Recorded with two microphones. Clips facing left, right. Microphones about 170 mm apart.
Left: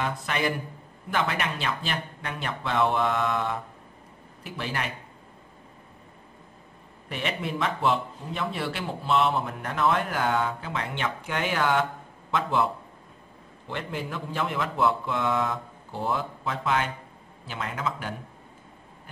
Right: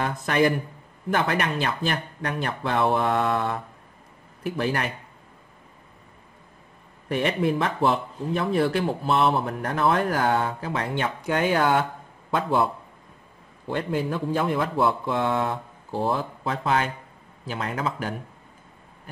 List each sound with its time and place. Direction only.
0.0 s speech: 45° right (ahead or behind)
7.1 s speech: 45° right (ahead or behind)
14.0 s speech: 35° right (ahead or behind)